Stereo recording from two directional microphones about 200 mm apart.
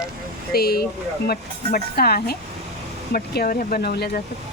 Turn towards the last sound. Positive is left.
turn(degrees=50)  # may be behind; listen again after turning